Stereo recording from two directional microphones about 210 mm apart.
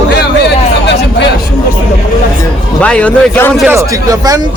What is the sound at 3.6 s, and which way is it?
Speech, 15° right (ahead or behind).